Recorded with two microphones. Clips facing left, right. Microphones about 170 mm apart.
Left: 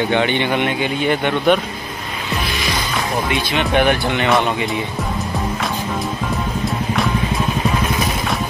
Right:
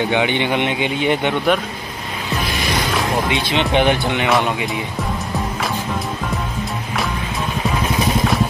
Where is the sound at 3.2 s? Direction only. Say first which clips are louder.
Even; 20° right (ahead or behind).